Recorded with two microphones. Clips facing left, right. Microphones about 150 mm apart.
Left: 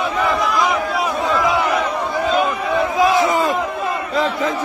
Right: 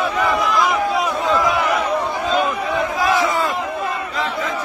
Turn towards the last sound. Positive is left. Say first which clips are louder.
# left 3 dB
turn(degrees=20)  # may be behind; listen again after turning